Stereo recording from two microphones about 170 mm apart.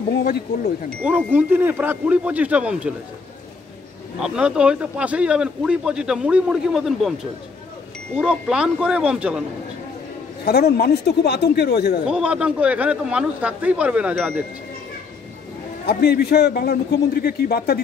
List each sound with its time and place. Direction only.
1.0 s a man's voice: 10° right (ahead or behind)
4.2 s a man's voice: 5° right (ahead or behind)
8.2 s a man's voice: 5° right (ahead or behind)
10.4 s a man's voice: 70° left (ahead or behind)
12.1 s a man's voice: 5° right (ahead or behind)
15.8 s a man's voice: 70° left (ahead or behind)